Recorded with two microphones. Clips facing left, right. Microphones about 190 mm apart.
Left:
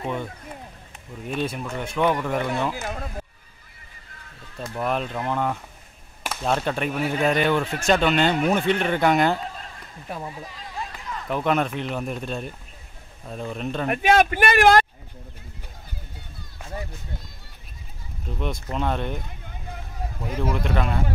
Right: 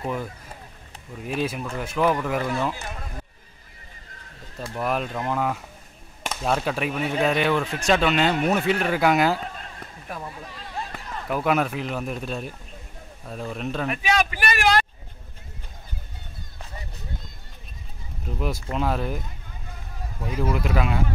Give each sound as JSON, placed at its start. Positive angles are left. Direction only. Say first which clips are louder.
{"t": 0.0, "sound": "speech", "louder": "even", "side_deg": -5}
{"t": 2.8, "sound": "a sound", "louder": "left 5 dB", "side_deg": 50}
{"t": 4.7, "sound": "speech", "louder": "even", "side_deg": -5}
{"t": 10.0, "sound": "speech", "louder": "left 2 dB", "side_deg": 20}
{"t": 11.2, "sound": "speech", "louder": "even", "side_deg": -5}
{"t": 13.8, "sound": "speech", "louder": "left 7 dB", "side_deg": 50}
{"t": 18.4, "sound": "speech", "louder": "right 1 dB", "side_deg": -5}
{"t": 20.4, "sound": "speech", "louder": "right 1 dB", "side_deg": -5}